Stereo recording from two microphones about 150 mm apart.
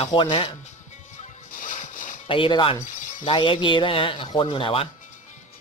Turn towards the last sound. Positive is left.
turn(degrees=35)  # may be behind; listen again after turning